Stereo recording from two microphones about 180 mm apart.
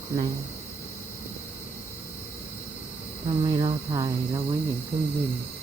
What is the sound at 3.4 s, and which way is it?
Speech, 25° right (ahead or behind).